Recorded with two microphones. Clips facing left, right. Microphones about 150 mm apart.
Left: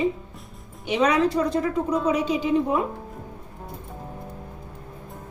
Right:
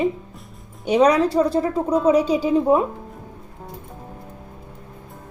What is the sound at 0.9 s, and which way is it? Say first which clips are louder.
A woman's voice: right 5 dB; 35° right (ahead or behind).